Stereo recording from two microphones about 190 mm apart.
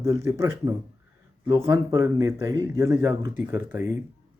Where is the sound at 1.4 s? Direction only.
25° right (ahead or behind).